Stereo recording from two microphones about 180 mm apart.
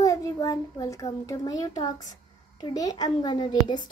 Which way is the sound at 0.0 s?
20° left (ahead or behind).